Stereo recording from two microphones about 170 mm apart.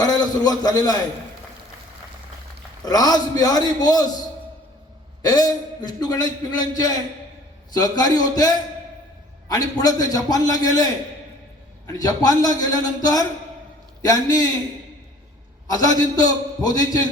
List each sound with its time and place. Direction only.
0.0 s a man's voice: 25° left (ahead or behind)
2.8 s a man's voice: 20° left (ahead or behind)
5.2 s a man's voice: 25° left (ahead or behind)
11.9 s a man's voice: 20° left (ahead or behind)
15.6 s a man's voice: 20° left (ahead or behind)